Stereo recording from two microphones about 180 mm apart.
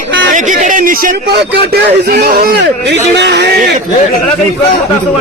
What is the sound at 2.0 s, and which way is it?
A man's voice, 55° right (ahead or behind).